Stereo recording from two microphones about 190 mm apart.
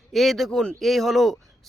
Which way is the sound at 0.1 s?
Centre (ahead or behind).